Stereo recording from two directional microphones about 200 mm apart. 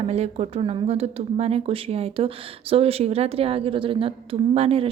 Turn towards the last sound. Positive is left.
turn(degrees=-30)  # may be behind; listen again after turning